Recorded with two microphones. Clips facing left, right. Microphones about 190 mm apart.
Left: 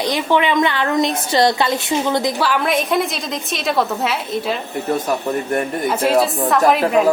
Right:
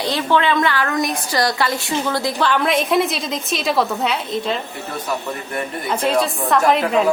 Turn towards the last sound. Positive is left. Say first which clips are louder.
# left 2 dB
turn(degrees=5)  # may be behind; listen again after turning